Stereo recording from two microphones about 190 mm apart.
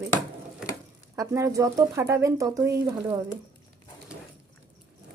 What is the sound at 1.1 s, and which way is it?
Speech, 15° right (ahead or behind).